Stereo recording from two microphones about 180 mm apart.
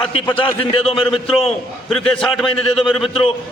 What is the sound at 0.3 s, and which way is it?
A man's voice, 30° left (ahead or behind).